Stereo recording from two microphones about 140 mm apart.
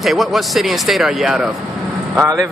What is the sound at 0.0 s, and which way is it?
Speech, centre (ahead or behind).